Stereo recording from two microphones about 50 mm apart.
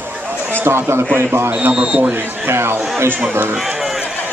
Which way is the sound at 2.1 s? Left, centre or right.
Right.